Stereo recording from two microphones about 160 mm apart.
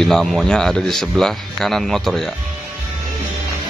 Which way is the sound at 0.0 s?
Centre (ahead or behind).